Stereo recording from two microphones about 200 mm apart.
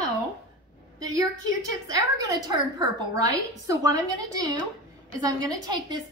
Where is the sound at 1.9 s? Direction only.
20° right (ahead or behind).